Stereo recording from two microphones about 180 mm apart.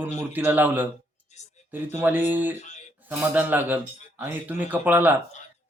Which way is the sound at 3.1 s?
10° right (ahead or behind).